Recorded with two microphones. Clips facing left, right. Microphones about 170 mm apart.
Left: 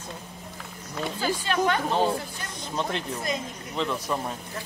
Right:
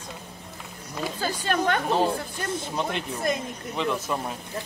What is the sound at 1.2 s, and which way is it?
Speech, 50° right (ahead or behind).